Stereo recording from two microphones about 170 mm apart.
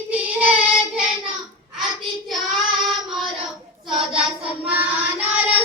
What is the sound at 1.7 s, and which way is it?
Child singing, centre (ahead or behind).